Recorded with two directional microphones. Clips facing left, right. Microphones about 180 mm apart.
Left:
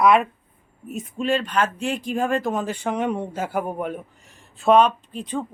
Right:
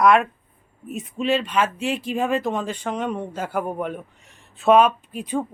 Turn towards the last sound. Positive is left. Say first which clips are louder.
# right 2 dB
turn(degrees=-10)  # may be behind; listen again after turning